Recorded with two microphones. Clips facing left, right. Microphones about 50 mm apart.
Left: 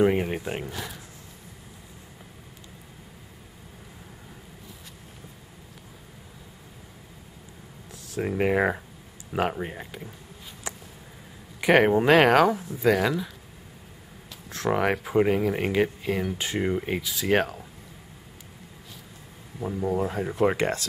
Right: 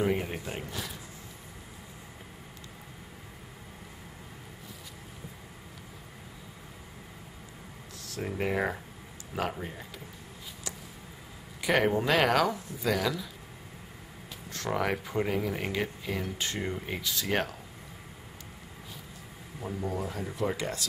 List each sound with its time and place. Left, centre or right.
0.0 s speech: left
8.1 s speech: left
10.7 s a sound: left
11.6 s speech: left
14.7 s speech: left
17.0 s speech: centre
19.6 s speech: centre
20.0 s speech: left